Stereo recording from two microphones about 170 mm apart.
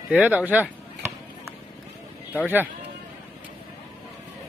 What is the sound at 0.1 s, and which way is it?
Speech, 10° right (ahead or behind).